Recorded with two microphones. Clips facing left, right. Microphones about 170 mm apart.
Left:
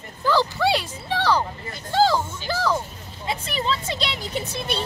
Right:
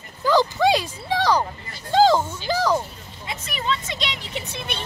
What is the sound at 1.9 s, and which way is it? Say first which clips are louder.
Music: right 3 dB; 15° right (ahead or behind).